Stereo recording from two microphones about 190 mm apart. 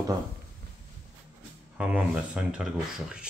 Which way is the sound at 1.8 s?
5° right (ahead or behind).